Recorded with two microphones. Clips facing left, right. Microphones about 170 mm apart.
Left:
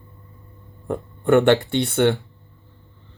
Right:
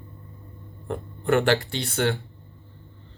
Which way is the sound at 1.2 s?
20° left (ahead or behind).